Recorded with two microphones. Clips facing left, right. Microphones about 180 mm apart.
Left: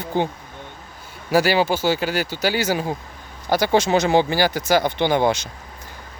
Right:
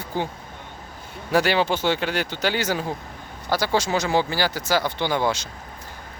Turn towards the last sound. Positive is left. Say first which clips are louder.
# left 5 dB
turn(degrees=15)  # may be behind; listen again after turning